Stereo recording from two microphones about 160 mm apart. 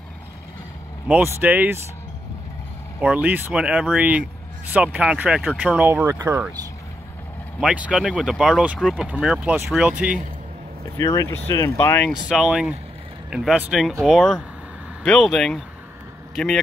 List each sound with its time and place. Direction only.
1.0 s speech: 10° right (ahead or behind)
3.0 s speech: 10° right (ahead or behind)
7.6 s speech: 5° right (ahead or behind)
11.0 s speech: 20° left (ahead or behind)
12.1 s speech: 5° right (ahead or behind)